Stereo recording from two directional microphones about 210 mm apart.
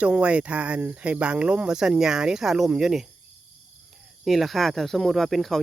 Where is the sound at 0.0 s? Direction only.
5° right (ahead or behind).